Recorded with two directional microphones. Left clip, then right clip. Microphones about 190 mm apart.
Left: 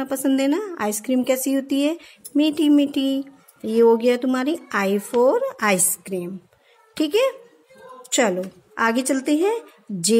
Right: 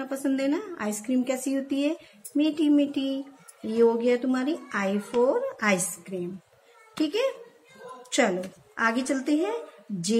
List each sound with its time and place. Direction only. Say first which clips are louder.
0.0 s a woman's voice: left 6 dB; 55° left (ahead or behind)